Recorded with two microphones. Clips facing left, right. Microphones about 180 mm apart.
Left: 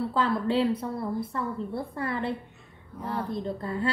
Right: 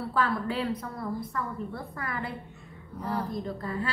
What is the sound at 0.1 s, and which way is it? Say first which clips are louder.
A woman's voice: left 1 dB; 25° left (ahead or behind).